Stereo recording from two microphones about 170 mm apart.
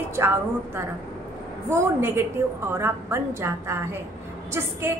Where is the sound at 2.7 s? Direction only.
15° right (ahead or behind).